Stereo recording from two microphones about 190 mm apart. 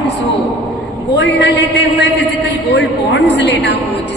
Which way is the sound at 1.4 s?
65° left (ahead or behind).